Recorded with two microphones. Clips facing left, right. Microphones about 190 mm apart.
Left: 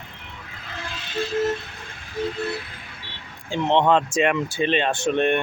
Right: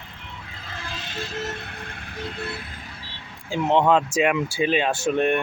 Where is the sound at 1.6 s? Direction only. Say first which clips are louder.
Right 3 dB; 60° right (ahead or behind).